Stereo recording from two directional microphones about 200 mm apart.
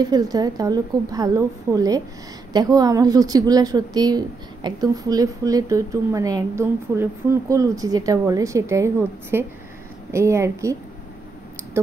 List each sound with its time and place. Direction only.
0.0 s a woman's voice: 20° right (ahead or behind)